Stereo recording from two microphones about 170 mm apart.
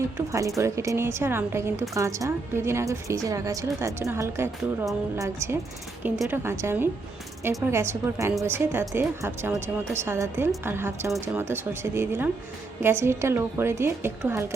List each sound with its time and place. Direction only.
0.3 s speech: 20° right (ahead or behind)